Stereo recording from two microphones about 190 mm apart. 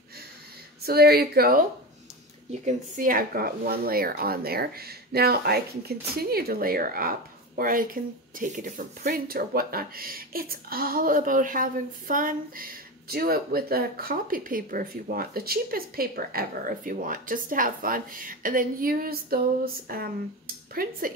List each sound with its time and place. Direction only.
0.8 s speech: 55° right (ahead or behind)
2.5 s speech: 40° right (ahead or behind)